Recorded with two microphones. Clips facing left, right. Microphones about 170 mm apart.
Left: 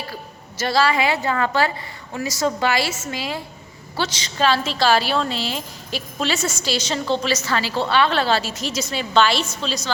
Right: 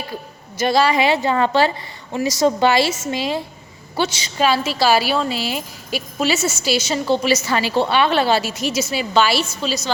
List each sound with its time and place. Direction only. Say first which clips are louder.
0.6 s a woman's voice: right 3 dB; 15° right (ahead or behind)
3.9 s a woman's voice: right 4 dB; 10° right (ahead or behind)